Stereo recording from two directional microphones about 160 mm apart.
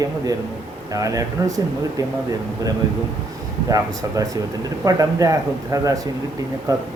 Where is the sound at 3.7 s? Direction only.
20° right (ahead or behind).